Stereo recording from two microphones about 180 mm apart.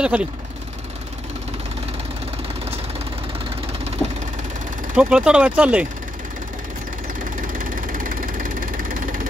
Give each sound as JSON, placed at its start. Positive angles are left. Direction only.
{"t": 0.0, "sound": "speech", "side_deg": -5}
{"t": 4.0, "sound": "vehicle", "side_deg": 0}
{"t": 4.9, "sound": "speech", "side_deg": -5}
{"t": 7.7, "sound": "vehicle", "side_deg": -50}